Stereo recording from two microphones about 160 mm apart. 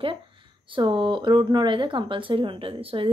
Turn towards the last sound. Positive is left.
turn(degrees=-35)  # may be behind; listen again after turning